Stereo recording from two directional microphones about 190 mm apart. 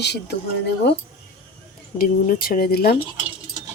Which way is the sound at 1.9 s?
50° left (ahead or behind).